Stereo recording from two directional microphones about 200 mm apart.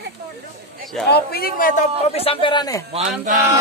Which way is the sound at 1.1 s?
50° left (ahead or behind).